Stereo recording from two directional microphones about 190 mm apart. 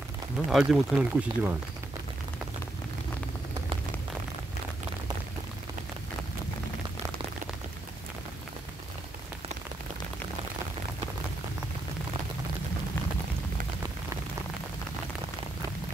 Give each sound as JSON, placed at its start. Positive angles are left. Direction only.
{"t": 0.5, "sound": "speech", "side_deg": 0}